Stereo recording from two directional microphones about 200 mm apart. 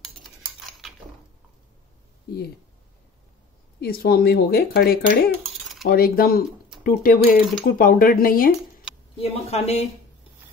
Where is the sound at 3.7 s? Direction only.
50° left (ahead or behind).